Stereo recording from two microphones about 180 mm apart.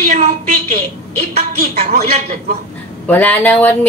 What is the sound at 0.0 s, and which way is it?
Speech, 40° right (ahead or behind).